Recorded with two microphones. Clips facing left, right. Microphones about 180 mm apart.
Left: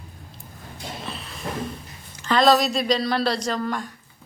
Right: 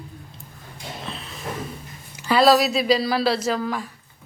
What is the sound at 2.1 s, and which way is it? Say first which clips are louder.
Speech: right 2 dB; 10° right (ahead or behind).